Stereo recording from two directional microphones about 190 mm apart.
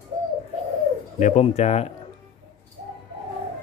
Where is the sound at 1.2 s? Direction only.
35° left (ahead or behind).